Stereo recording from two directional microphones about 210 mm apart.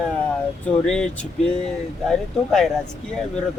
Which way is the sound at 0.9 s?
5° left (ahead or behind).